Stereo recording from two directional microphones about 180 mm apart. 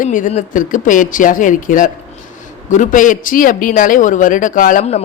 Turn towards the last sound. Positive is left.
turn(degrees=40)  # may be behind; listen again after turning